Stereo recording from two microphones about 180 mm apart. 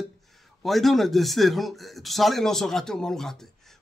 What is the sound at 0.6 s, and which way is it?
Speech, centre (ahead or behind).